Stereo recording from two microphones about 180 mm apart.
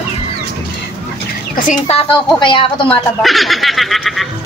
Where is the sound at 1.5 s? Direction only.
40° left (ahead or behind).